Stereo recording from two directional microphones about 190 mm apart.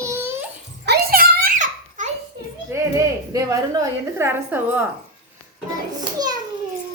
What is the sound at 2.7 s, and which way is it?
A woman's voice, 15° right (ahead or behind).